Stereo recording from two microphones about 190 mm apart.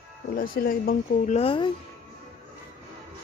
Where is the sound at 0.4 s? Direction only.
50° left (ahead or behind); by 1.7 s 30° left (ahead or behind).